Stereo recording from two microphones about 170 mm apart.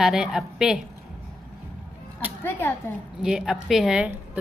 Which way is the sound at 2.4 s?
10° left (ahead or behind).